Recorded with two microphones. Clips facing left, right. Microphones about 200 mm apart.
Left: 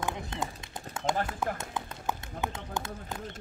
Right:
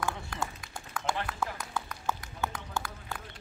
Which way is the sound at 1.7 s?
20° left (ahead or behind).